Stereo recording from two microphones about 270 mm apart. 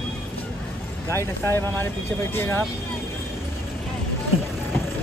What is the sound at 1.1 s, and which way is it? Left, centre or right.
Speech, centre.